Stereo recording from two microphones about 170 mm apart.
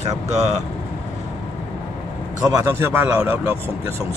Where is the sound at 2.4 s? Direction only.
20° right (ahead or behind).